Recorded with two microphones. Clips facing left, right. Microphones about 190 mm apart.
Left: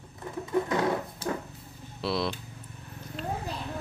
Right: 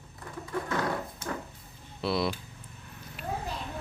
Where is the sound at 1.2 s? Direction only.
30° left (ahead or behind).